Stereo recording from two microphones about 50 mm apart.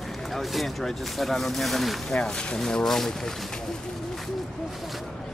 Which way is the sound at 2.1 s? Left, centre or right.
Centre.